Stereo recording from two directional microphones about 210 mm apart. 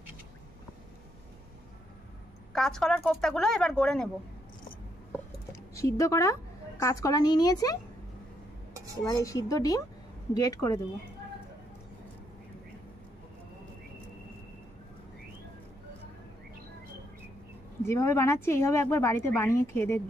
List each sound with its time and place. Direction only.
2.5 s speech: centre (ahead or behind)
5.5 s a sound: 15° left (ahead or behind)
6.8 s a woman's voice: 15° left (ahead or behind)
9.0 s a woman's voice: 15° left (ahead or behind)
17.8 s a woman's voice: 10° left (ahead or behind)